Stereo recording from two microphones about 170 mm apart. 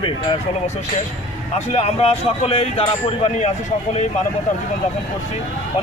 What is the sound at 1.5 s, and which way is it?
Speech, 40° left (ahead or behind).